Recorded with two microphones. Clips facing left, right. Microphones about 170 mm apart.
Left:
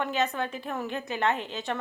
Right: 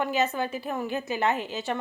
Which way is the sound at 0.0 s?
5° right (ahead or behind).